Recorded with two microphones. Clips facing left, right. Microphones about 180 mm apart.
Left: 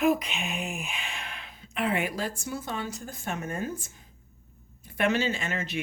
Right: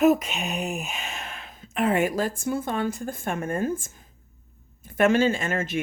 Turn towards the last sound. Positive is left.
turn(degrees=-50)  # may be behind; listen again after turning